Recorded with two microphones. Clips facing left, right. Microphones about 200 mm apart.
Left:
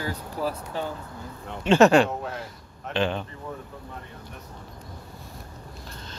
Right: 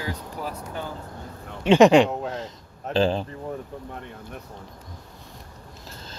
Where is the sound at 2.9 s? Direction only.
35° right (ahead or behind).